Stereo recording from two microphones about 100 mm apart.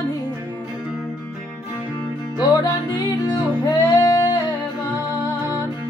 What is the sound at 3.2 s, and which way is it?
Music, 45° left (ahead or behind).